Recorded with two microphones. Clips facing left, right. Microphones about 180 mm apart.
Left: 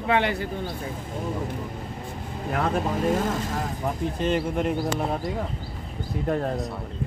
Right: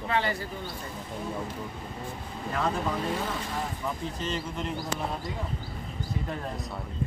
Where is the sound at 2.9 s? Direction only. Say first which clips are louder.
Left 7 dB; 45° left (ahead or behind).